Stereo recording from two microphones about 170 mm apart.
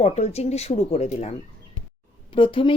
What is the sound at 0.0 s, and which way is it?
Speech, 40° left (ahead or behind).